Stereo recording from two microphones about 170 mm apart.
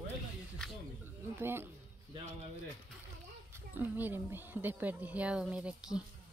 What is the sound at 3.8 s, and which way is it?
Speech, 10° right (ahead or behind).